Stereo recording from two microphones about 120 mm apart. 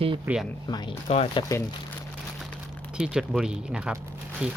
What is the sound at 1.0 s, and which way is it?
Speech, 60° left (ahead or behind).